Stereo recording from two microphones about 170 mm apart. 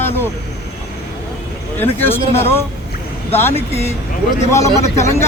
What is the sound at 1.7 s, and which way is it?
A man's voice, 10° left (ahead or behind).